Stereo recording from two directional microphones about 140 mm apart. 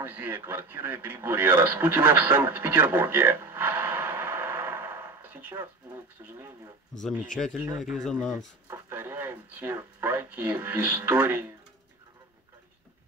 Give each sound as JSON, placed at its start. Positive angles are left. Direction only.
{"t": 0.0, "sound": "speech", "side_deg": -15}
{"t": 7.0, "sound": "speech", "side_deg": 5}
{"t": 8.6, "sound": "speech", "side_deg": -15}